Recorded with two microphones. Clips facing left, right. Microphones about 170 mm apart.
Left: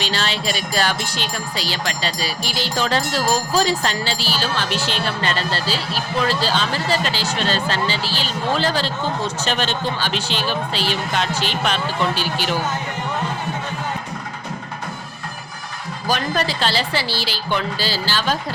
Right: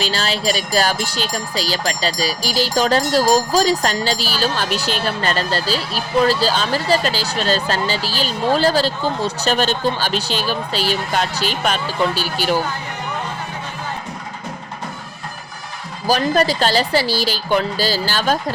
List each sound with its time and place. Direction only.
0.0 s music: 40° right (ahead or behind)
16.0 s a woman's voice: 40° right (ahead or behind)